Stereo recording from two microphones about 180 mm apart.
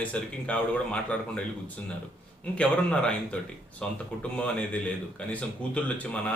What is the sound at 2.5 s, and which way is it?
A man's voice, 5° left (ahead or behind).